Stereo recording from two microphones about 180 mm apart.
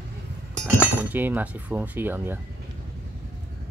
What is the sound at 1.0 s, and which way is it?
Speech, 10° right (ahead or behind).